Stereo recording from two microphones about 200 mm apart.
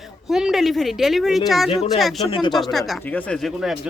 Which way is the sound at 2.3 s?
25° left (ahead or behind).